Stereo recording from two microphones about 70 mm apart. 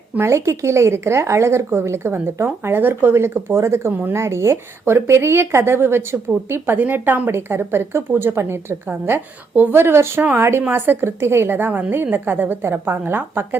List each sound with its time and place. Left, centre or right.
0.2 s speech: right